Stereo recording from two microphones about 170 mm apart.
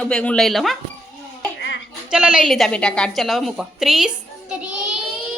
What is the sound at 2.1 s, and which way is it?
A woman's voice, 5° right (ahead or behind).